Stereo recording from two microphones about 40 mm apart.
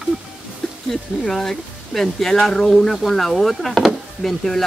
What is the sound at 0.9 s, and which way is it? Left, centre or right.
Speech, centre.